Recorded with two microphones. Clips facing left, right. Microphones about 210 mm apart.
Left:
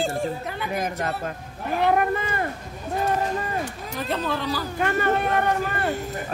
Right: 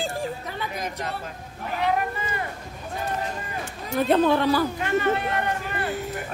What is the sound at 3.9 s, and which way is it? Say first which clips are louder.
Speech: right 8 dB; 60° right (ahead or behind).